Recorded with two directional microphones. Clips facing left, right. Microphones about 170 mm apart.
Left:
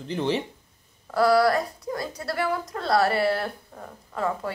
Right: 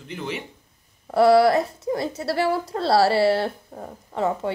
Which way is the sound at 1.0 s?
25° right (ahead or behind).